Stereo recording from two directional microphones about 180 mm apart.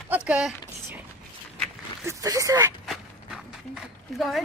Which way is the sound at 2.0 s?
20° right (ahead or behind).